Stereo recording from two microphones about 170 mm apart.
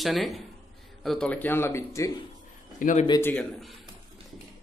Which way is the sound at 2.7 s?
50° left (ahead or behind).